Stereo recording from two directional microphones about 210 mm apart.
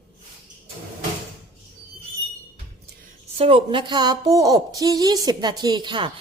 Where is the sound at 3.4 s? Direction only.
25° right (ahead or behind).